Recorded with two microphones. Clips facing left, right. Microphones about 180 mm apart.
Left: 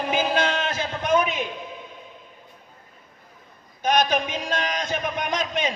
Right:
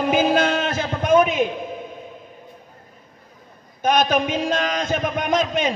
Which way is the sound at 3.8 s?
50° right (ahead or behind).